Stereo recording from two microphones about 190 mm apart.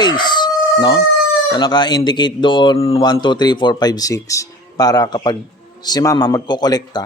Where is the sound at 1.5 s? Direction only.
25° left (ahead or behind).